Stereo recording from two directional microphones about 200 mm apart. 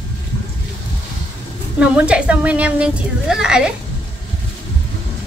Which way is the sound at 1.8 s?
5° right (ahead or behind).